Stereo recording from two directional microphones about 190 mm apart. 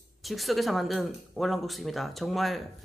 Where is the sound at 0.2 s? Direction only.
Centre (ahead or behind).